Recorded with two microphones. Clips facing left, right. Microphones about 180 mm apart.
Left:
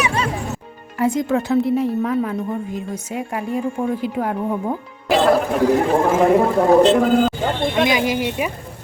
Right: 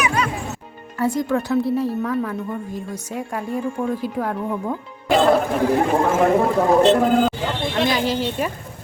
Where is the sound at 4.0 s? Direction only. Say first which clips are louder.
Left 2 dB; 15° left (ahead or behind).